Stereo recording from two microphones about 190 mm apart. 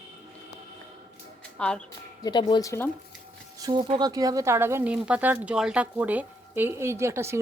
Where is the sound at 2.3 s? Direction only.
25° left (ahead or behind).